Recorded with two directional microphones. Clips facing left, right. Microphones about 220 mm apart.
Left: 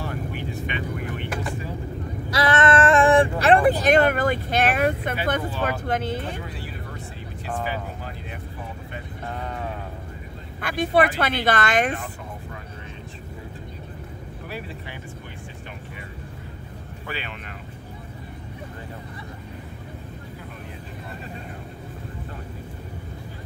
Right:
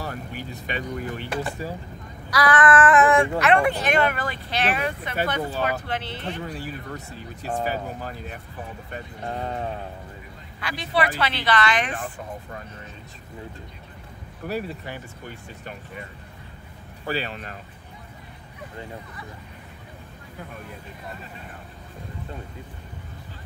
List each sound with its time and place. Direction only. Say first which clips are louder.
0.0 s vehicle: left 3 dB; 40° right (ahead or behind)
2.3 s speech: even; 25° left (ahead or behind); by 6.4 s 45° left (ahead or behind)
7.4 s speech: right 2 dB; 40° right (ahead or behind)
9.4 s a sound: right 3 dB; 30° right (ahead or behind)
10.6 s speech: left 5 dB; 50° left (ahead or behind)
17.0 s speech: right 6 dB; 35° right (ahead or behind)